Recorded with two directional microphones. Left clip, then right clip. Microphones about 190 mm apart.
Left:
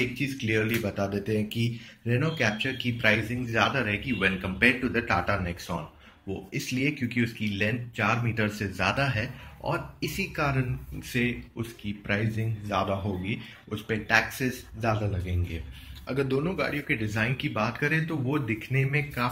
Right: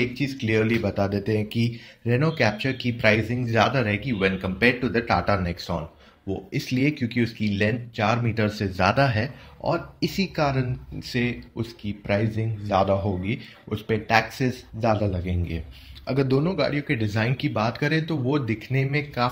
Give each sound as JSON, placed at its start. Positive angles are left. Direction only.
{"t": 0.0, "sound": "speech", "side_deg": -40}